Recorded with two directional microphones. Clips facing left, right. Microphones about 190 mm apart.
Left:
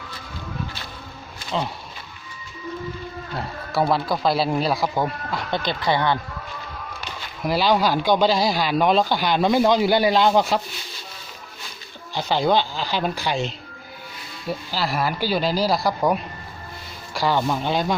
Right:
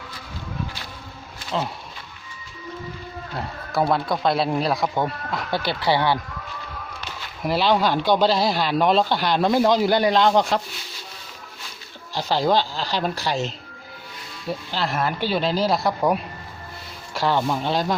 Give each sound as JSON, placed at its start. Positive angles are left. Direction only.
{"t": 1.4, "sound": "insect", "side_deg": 0}
{"t": 3.3, "sound": "speech", "side_deg": 0}
{"t": 7.4, "sound": "speech", "side_deg": 0}
{"t": 12.1, "sound": "speech", "side_deg": 0}
{"t": 14.7, "sound": "speech", "side_deg": 5}